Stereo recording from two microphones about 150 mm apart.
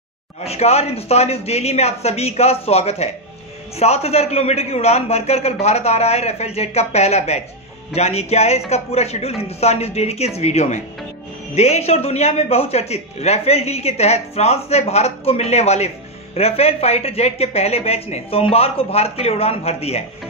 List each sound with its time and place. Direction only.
0.5 s a man's voice: 45° left (ahead or behind)